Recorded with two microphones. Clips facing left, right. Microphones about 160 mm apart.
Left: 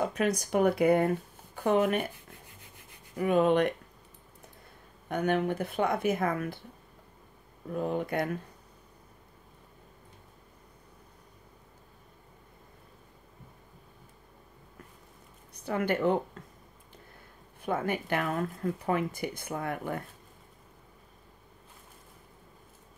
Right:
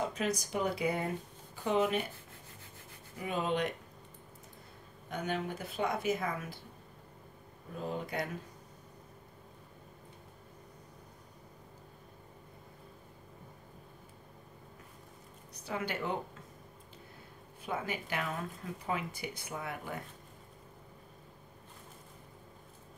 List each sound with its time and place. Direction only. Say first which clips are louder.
0.0 s speech: left 5 dB; 55° left (ahead or behind)
3.2 s speech: left 9 dB; 55° left (ahead or behind)
5.1 s speech: left 8 dB; 60° left (ahead or behind)
7.7 s speech: left 7 dB; 60° left (ahead or behind)
15.6 s speech: left 9 dB; 50° left (ahead or behind)
17.6 s speech: left 7 dB; 50° left (ahead or behind)